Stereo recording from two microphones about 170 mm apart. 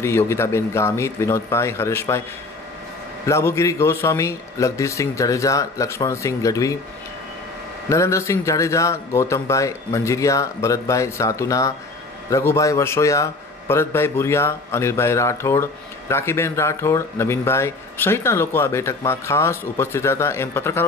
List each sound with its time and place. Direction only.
0.0 s a man's voice: 15° left (ahead or behind)
3.3 s a man's voice: 15° left (ahead or behind)
7.9 s a man's voice: 15° left (ahead or behind)